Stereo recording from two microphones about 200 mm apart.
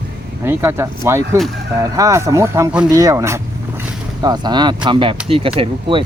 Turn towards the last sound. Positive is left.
turn(degrees=-25)  # may be behind; listen again after turning